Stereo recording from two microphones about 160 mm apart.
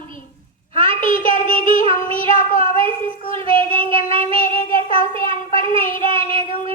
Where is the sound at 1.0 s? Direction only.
55° left (ahead or behind).